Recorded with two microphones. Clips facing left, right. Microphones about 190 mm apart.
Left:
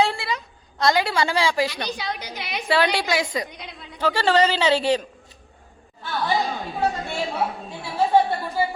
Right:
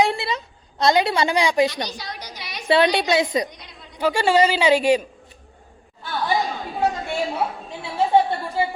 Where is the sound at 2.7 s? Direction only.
20° right (ahead or behind).